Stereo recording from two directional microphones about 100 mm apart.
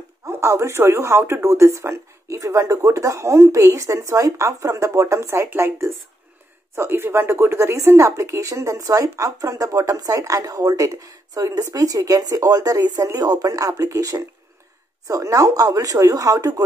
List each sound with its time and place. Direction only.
0.4 s speech: 30° right (ahead or behind)